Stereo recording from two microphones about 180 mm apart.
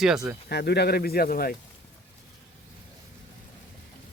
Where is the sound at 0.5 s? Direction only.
65° left (ahead or behind).